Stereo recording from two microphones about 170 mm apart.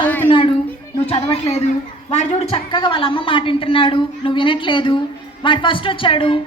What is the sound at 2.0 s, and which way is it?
A woman's voice, 35° left (ahead or behind).